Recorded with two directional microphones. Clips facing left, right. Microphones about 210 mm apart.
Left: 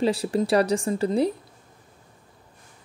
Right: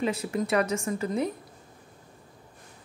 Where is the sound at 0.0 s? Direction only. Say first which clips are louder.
Left 5 dB; 30° left (ahead or behind).